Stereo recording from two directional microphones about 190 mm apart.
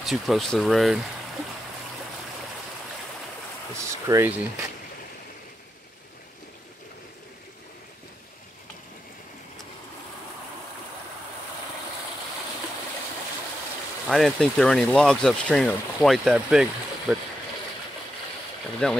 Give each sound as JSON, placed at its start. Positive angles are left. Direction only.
{"t": 0.0, "sound": "speech", "side_deg": 0}
{"t": 3.7, "sound": "speech", "side_deg": -15}
{"t": 14.0, "sound": "speech", "side_deg": 0}
{"t": 18.8, "sound": "speech", "side_deg": 5}